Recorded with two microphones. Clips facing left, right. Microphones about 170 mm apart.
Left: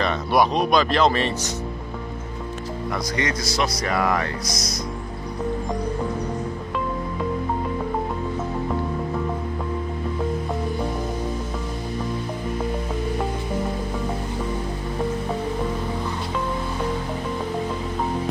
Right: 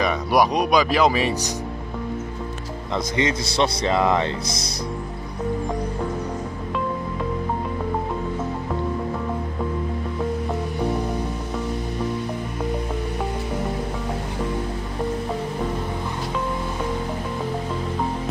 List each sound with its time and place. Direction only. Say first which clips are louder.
0.0 s speech: right 1 dB; 10° right (ahead or behind)
2.9 s speech: right 4 dB; 25° right (ahead or behind)